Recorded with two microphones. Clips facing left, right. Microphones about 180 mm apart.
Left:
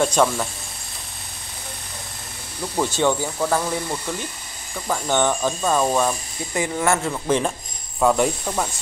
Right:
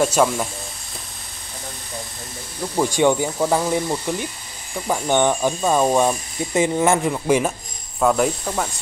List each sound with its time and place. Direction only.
0.0 s speech: 10° right (ahead or behind)
2.8 s speech: 15° right (ahead or behind)
8.0 s speech: centre (ahead or behind)